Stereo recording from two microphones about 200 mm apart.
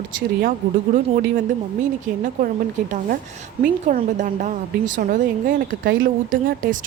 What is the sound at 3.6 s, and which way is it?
A woman's voice, 45° right (ahead or behind).